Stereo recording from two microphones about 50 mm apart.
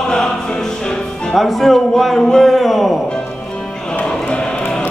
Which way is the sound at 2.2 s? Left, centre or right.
Centre.